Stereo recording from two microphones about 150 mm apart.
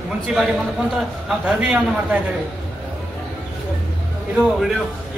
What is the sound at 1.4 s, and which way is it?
Speech, 10° right (ahead or behind).